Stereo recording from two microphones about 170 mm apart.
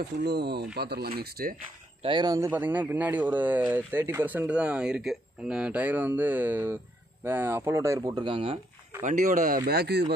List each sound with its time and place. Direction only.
0.0 s speech: 75° right (ahead or behind)
2.0 s speech: 25° right (ahead or behind)
2.5 s speech: 10° right (ahead or behind)
8.0 s speech: 30° right (ahead or behind)
9.0 s speech: 50° right (ahead or behind)
9.7 s speech: 70° right (ahead or behind)